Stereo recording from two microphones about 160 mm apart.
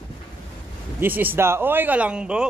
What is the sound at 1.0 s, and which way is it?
Speech, 10° right (ahead or behind).